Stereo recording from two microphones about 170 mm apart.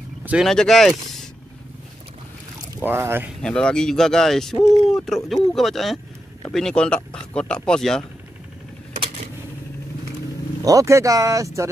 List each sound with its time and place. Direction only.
0.2 s vehicle: 5° right (ahead or behind)
0.5 s speech: centre (ahead or behind)
2.8 s speech: 15° right (ahead or behind)
3.4 s speech: 5° left (ahead or behind)
10.6 s speech: 20° right (ahead or behind)